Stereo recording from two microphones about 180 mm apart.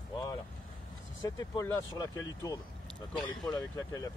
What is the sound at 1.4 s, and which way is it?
A man's voice, 20° left (ahead or behind).